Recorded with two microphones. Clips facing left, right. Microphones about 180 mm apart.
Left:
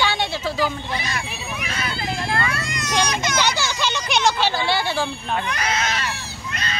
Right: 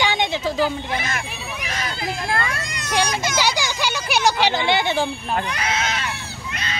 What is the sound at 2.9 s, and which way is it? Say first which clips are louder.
Speech: right 1 dB; 10° right (ahead or behind).